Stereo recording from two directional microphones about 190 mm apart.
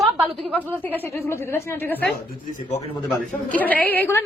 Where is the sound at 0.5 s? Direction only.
10° left (ahead or behind).